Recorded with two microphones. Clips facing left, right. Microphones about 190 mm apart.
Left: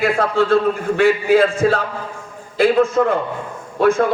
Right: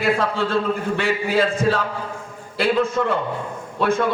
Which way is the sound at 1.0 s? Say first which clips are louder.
Left 9 dB; 50° left (ahead or behind).